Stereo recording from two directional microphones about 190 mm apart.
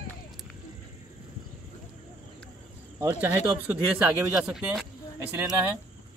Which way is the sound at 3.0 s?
5° right (ahead or behind).